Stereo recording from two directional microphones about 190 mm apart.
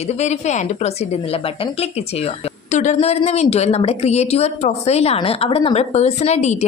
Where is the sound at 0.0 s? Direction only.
35° left (ahead or behind).